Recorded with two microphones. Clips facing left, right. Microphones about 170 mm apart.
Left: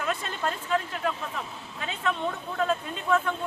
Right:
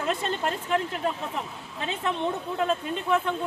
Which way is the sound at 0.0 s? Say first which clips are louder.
Right 3 dB; 25° right (ahead or behind).